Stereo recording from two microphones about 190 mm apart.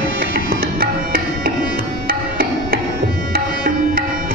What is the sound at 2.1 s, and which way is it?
Music, 50° right (ahead or behind).